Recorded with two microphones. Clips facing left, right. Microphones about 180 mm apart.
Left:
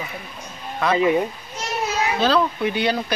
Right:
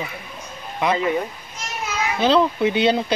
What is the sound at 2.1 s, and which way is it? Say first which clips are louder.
Speech: right 4 dB; 20° right (ahead or behind).